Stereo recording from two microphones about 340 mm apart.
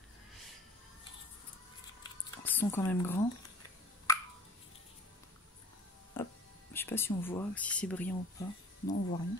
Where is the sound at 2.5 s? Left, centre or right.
Centre.